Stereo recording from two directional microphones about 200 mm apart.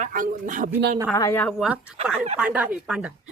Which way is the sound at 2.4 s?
5° right (ahead or behind).